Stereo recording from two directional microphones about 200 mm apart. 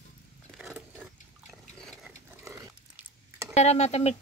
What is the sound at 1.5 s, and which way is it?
Liquid, centre (ahead or behind).